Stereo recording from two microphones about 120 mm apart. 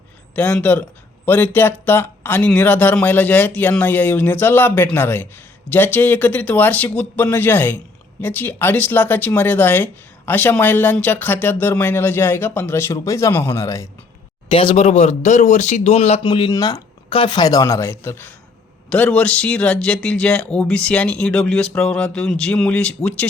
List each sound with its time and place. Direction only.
0.3 s speech: 15° left (ahead or behind)
14.5 s speech: 45° left (ahead or behind)
16.2 s speech: 40° left (ahead or behind)
17.1 s speech: 45° left (ahead or behind); by 23.2 s 10° left (ahead or behind)